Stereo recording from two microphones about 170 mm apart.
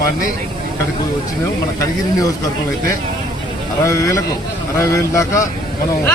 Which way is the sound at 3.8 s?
20° left (ahead or behind).